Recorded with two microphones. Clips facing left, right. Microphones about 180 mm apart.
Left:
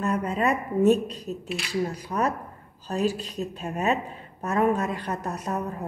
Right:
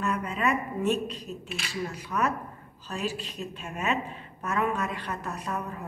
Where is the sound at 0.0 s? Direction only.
40° left (ahead or behind).